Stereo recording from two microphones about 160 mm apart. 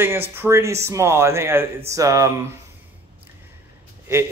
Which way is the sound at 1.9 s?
20° right (ahead or behind).